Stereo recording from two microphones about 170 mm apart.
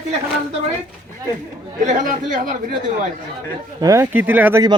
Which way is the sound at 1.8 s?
50° right (ahead or behind).